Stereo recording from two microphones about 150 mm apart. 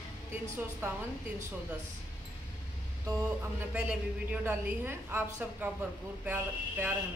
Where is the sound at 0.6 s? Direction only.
15° right (ahead or behind).